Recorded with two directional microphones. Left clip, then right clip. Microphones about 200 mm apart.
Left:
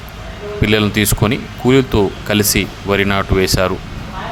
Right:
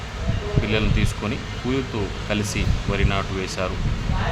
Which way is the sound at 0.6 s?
40° left (ahead or behind).